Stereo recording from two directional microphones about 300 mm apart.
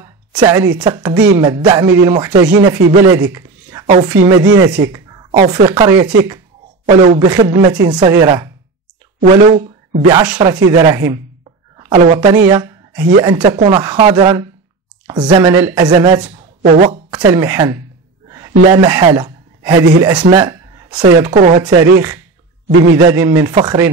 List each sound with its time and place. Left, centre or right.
0.0 s a woman's voice: centre
9.2 s speech: right
10.0 s a woman's voice: centre
12.4 s a sound: centre
13.2 s a woman's voice: centre
18.3 s a sound: centre
20.0 s speech: centre
22.9 s speech: centre